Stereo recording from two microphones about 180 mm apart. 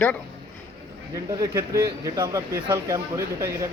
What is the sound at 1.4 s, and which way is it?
Speech, 20° right (ahead or behind).